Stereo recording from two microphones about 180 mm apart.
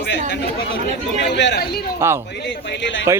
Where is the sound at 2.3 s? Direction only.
70° left (ahead or behind).